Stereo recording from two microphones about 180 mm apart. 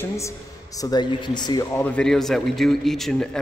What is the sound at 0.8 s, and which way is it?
Speech, 25° left (ahead or behind).